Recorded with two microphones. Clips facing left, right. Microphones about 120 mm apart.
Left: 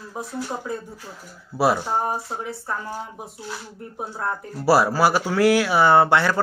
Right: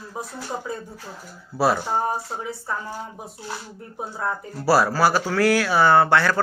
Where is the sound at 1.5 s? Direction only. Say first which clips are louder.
Left 1 dB; 20° left (ahead or behind).